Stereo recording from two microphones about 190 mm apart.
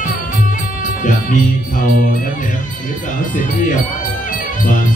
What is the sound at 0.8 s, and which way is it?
Music, 45° left (ahead or behind).